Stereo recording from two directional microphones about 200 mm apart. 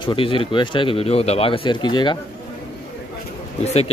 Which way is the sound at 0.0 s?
25° left (ahead or behind).